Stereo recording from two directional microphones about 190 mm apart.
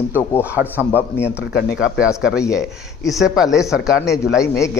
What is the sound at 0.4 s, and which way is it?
Speech, 10° right (ahead or behind).